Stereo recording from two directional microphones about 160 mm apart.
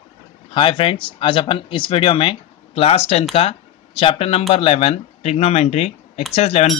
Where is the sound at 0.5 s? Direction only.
35° left (ahead or behind).